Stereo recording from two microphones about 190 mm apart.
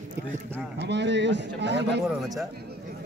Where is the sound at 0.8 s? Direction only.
65° right (ahead or behind).